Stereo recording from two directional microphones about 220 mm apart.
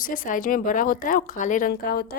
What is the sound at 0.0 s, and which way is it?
Speech, 40° left (ahead or behind).